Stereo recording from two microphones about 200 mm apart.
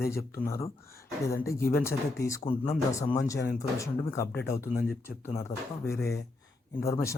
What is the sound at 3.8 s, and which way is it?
Speech, 15° left (ahead or behind).